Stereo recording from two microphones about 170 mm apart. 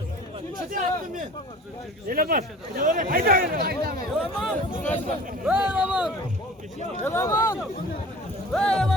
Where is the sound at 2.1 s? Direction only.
60° right (ahead or behind).